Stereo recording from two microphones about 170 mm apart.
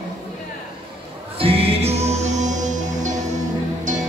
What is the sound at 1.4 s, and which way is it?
Music, 35° right (ahead or behind).